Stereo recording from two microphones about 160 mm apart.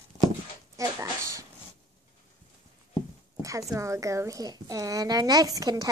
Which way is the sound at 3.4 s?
20° right (ahead or behind).